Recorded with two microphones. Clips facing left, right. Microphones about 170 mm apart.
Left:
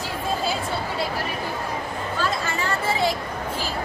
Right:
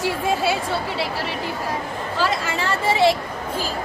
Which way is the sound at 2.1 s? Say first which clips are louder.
Right 4 dB; 90° right.